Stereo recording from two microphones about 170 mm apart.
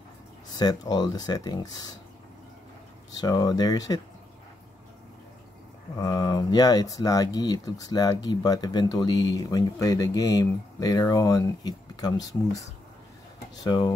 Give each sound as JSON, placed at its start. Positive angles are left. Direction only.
{"t": 0.5, "sound": "speech", "side_deg": 25}
{"t": 3.1, "sound": "speech", "side_deg": 20}
{"t": 5.9, "sound": "speech", "side_deg": 20}
{"t": 13.7, "sound": "speech", "side_deg": 25}